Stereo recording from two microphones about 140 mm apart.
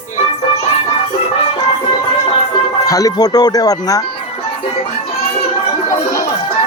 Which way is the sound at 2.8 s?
25° left (ahead or behind).